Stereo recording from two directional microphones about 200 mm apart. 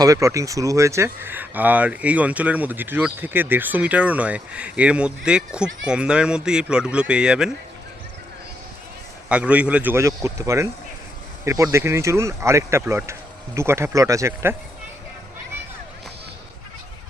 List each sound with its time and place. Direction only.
0.0 s speech: 15° right (ahead or behind)
9.3 s speech: 5° right (ahead or behind)